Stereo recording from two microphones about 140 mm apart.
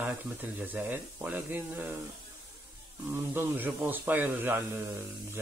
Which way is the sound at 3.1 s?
15° right (ahead or behind).